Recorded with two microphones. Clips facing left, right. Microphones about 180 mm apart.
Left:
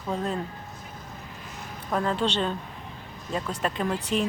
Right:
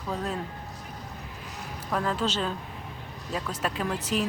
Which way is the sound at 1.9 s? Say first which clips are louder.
Left 2 dB; centre (ahead or behind).